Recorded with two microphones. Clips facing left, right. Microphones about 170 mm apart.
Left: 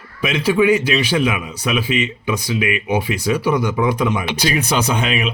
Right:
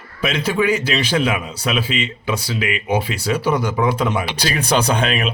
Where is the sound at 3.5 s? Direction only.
35° right (ahead or behind).